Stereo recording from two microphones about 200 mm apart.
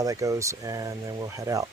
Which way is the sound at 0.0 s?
15° right (ahead or behind).